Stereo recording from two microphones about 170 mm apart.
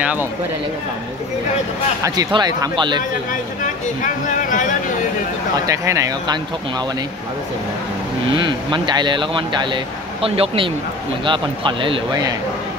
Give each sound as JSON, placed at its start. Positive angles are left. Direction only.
{"t": 0.0, "sound": "speech", "side_deg": -10}
{"t": 2.0, "sound": "speech", "side_deg": -25}
{"t": 3.6, "sound": "speech", "side_deg": 50}
{"t": 5.7, "sound": "speech", "side_deg": -20}
{"t": 8.3, "sound": "speech", "side_deg": -30}